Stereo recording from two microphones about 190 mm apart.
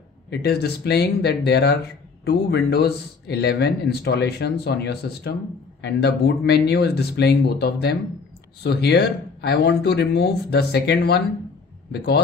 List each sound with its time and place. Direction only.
0.3 s speech: 60° left (ahead or behind)